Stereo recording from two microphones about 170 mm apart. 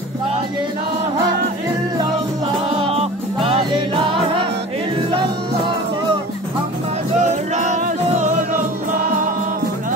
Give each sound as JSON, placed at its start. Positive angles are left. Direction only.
{"t": 2.8, "sound": "music", "side_deg": -35}
{"t": 7.2, "sound": "music", "side_deg": -45}